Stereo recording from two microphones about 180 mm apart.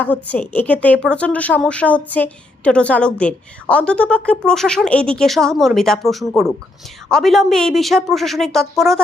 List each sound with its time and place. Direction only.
0.0 s a woman's voice: 10° left (ahead or behind)